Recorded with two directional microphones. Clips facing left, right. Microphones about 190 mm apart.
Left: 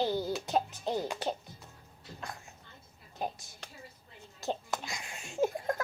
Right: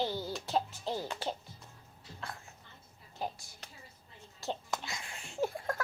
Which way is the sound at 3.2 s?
20° left (ahead or behind).